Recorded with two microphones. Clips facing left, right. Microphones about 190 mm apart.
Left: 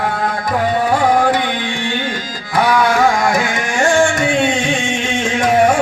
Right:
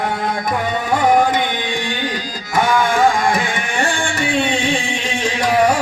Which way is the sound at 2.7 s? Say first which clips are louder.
Left 1 dB; 25° right (ahead or behind).